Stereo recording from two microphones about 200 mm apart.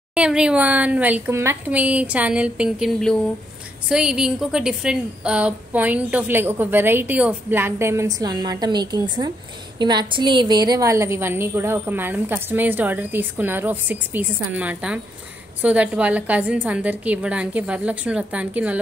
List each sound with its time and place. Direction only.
0.1 s a woman's voice: 5° right (ahead or behind)